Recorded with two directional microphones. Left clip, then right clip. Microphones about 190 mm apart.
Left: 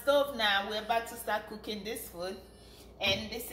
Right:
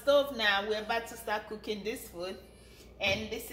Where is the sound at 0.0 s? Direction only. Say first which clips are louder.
Right 1 dB; 35° right (ahead or behind).